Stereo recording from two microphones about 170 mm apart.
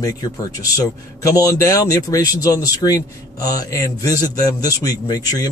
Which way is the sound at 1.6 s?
20° left (ahead or behind).